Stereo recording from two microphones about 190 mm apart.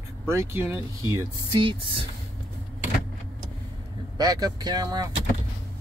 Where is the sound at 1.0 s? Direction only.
25° right (ahead or behind).